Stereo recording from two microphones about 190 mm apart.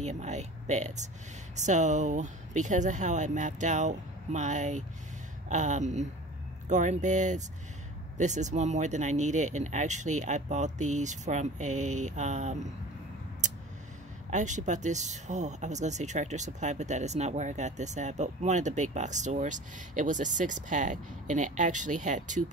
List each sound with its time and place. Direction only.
0.0 s speech: 35° right (ahead or behind)
14.3 s speech: 40° right (ahead or behind)